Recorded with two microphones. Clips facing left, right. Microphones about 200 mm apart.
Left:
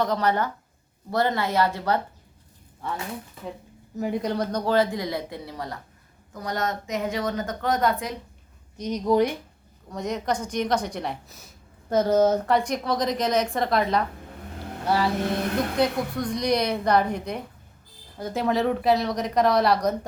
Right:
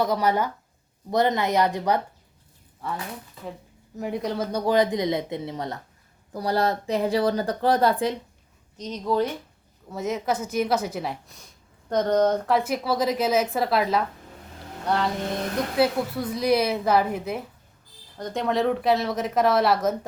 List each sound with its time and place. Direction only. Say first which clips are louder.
0.0 s a woman's voice: right 1 dB; 10° right (ahead or behind)
3.9 s a woman's voice: left 2 dB; centre (ahead or behind)
4.6 s speech: right 3 dB; 15° right (ahead or behind)
6.3 s speech: right 5 dB; 35° right (ahead or behind)
8.8 s speech: left 3 dB; 15° left (ahead or behind)
9.9 s a woman's voice: right 1 dB; 5° right (ahead or behind)